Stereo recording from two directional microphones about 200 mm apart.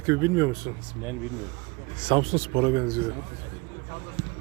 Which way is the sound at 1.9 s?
25° right (ahead or behind).